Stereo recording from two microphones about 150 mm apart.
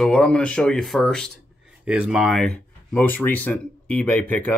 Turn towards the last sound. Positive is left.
turn(degrees=10)  # may be behind; listen again after turning